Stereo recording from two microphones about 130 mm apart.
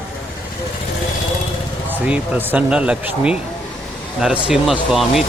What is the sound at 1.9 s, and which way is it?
Speech, 10° right (ahead or behind).